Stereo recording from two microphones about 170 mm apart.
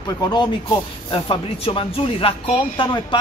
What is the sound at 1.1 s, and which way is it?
Speech, 30° left (ahead or behind).